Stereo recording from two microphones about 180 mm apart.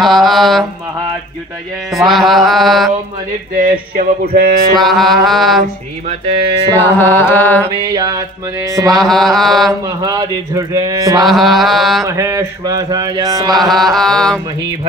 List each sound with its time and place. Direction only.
0.0 s mantra: centre (ahead or behind)
1.9 s mantra: centre (ahead or behind)
3.5 s a sound: 50° right (ahead or behind)
4.7 s mantra: centre (ahead or behind)
6.8 s music: 10° left (ahead or behind)
7.6 s a sound: 20° right (ahead or behind)
8.6 s mantra: 15° right (ahead or behind)
8.9 s mantra: centre (ahead or behind)
9.8 s a sound: 20° right (ahead or behind)
11.2 s mantra: centre (ahead or behind)
12.2 s a sound: 20° right (ahead or behind)
13.6 s mantra: centre (ahead or behind)